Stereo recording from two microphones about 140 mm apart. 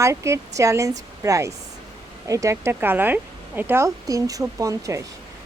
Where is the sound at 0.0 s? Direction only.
20° right (ahead or behind).